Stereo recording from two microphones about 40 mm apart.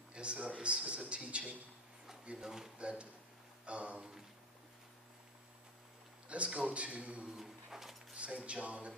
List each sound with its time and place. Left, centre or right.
0.1 s a man's voice: right
2.4 s speech: centre
2.8 s a man's voice: right
6.2 s a man's voice: right
7.3 s a sound: centre
8.1 s a man's voice: right